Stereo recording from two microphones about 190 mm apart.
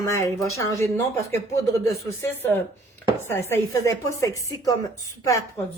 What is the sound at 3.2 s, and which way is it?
Speech, 15° left (ahead or behind).